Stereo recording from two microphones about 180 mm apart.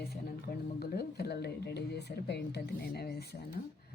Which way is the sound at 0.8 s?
60° left (ahead or behind).